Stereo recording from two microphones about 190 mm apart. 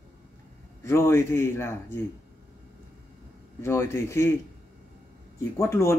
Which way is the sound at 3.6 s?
15° left (ahead or behind).